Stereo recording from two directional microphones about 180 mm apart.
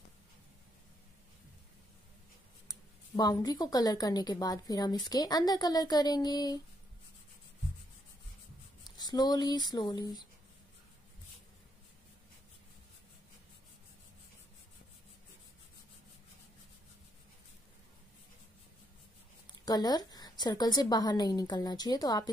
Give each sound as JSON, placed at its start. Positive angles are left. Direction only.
{"t": 2.7, "sound": "a woman's voice", "side_deg": 20}
{"t": 8.8, "sound": "speech", "side_deg": 25}
{"t": 19.6, "sound": "a woman's voice", "side_deg": 20}